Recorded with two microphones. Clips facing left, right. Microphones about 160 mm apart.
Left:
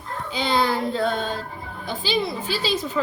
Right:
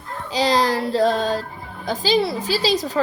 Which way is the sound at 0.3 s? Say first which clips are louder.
Right 4 dB; 90° right.